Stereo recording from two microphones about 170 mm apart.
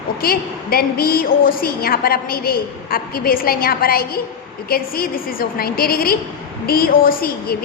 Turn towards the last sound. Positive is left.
turn(degrees=60)  # may be behind; listen again after turning